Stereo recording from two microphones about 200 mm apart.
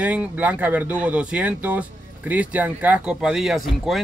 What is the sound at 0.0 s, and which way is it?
Speech, 5° right (ahead or behind).